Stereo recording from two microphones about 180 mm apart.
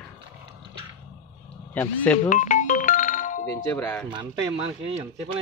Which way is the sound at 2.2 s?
45° left (ahead or behind).